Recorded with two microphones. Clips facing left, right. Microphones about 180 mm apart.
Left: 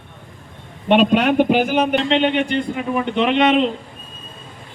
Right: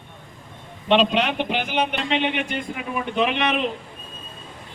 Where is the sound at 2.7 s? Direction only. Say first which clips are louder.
Left 6 dB; 30° left (ahead or behind).